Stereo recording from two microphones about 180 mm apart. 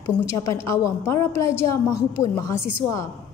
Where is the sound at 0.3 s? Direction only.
15° left (ahead or behind).